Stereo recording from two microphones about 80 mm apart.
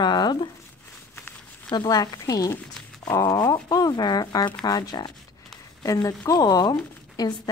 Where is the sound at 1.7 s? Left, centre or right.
Left.